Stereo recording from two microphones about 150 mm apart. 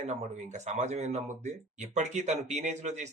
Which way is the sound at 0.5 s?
50° right (ahead or behind).